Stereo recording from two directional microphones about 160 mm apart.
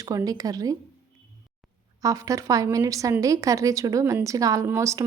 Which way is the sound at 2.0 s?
20° right (ahead or behind).